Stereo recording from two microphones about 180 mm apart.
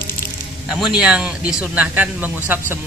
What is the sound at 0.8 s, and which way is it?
A man's voice, 5° right (ahead or behind).